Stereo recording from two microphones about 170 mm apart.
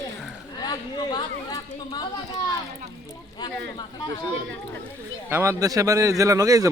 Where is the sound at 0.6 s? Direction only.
25° left (ahead or behind).